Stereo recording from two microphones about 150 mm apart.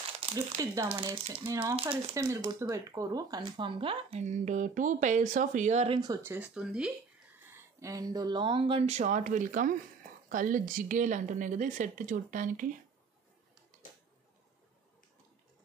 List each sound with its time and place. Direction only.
0.2 s a sound: 35° right (ahead or behind)
0.6 s speech: 20° right (ahead or behind)
0.9 s speech: 35° right (ahead or behind)
1.5 s speech: 20° right (ahead or behind); by 5.9 s 50° right (ahead or behind)
6.2 s speech: 10° right (ahead or behind)
7.8 s a woman's voice: 25° right (ahead or behind); by 12.6 s 60° right (ahead or behind)
13.8 s a sound: 60° left (ahead or behind)